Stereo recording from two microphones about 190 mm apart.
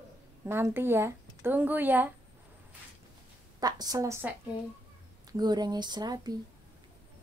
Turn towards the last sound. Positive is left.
turn(degrees=-20)  # may be behind; listen again after turning